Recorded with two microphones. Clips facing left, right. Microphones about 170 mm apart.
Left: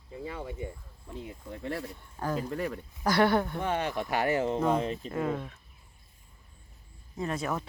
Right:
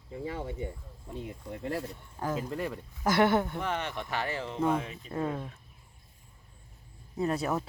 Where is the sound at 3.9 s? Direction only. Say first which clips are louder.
Left 6 dB; 15° left (ahead or behind).